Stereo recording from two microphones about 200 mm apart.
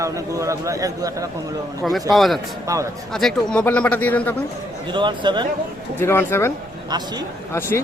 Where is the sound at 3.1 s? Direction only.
Centre (ahead or behind).